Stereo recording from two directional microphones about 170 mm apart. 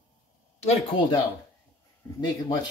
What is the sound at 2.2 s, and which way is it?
Speech, 25° left (ahead or behind).